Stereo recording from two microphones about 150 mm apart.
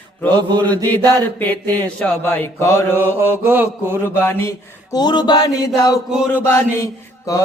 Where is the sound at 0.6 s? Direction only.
10° left (ahead or behind).